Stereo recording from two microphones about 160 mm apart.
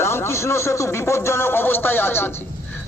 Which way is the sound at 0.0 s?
15° left (ahead or behind).